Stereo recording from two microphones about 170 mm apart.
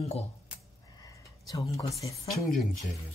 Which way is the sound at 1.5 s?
20° left (ahead or behind).